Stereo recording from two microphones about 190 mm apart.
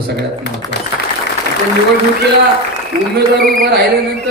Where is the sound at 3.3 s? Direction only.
50° right (ahead or behind).